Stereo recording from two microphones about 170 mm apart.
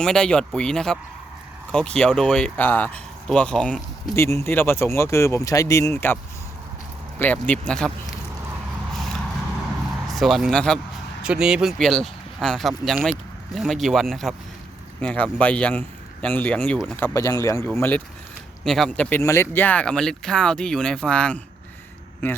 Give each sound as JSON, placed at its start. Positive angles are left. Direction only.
{"t": 0.0, "sound": "speech", "side_deg": 5}
{"t": 7.2, "sound": "speech", "side_deg": 10}
{"t": 10.1, "sound": "speech", "side_deg": 0}
{"t": 17.2, "sound": "speech", "side_deg": 20}